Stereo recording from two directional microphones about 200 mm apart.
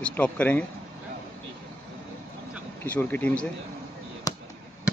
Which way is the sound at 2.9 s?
10° left (ahead or behind).